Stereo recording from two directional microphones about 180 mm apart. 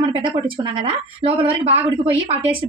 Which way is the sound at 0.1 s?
25° right (ahead or behind).